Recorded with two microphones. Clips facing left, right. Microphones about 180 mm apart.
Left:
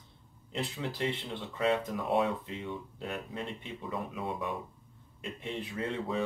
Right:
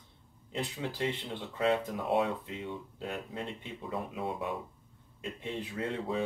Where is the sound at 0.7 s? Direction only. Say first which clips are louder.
Even; 15° right (ahead or behind).